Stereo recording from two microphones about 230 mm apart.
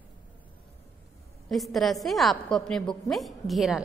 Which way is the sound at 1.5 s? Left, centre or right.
Centre.